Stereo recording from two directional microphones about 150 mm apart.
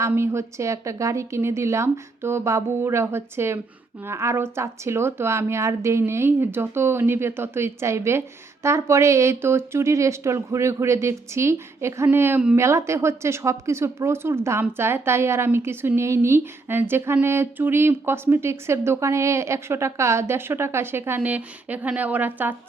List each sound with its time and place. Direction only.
0.0 s speech: 20° right (ahead or behind)